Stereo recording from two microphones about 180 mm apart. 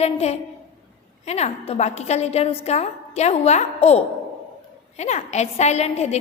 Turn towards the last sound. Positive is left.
turn(degrees=35)  # may be behind; listen again after turning